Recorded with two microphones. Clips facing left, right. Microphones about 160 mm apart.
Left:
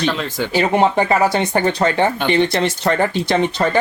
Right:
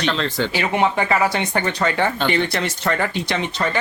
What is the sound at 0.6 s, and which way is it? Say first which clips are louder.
Speech: left 6 dB; 35° left (ahead or behind).